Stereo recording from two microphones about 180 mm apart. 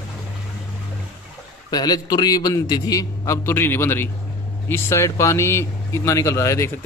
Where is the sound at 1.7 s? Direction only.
20° left (ahead or behind).